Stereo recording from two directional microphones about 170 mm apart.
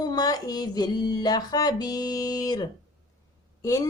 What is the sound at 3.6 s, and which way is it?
Speech, 20° left (ahead or behind).